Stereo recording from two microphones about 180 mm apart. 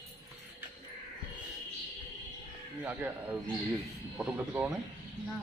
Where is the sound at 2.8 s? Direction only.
10° right (ahead or behind).